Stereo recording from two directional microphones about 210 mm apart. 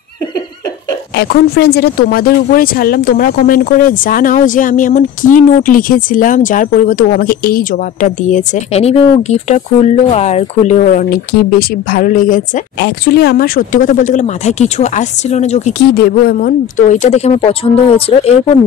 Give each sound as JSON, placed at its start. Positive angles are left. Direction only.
{"t": 1.1, "sound": "speech", "side_deg": 50}
{"t": 12.7, "sound": "speech", "side_deg": 50}
{"t": 15.8, "sound": "speech", "side_deg": 50}